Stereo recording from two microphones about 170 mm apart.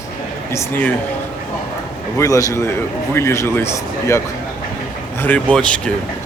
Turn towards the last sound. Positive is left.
turn(degrees=5)  # may be behind; listen again after turning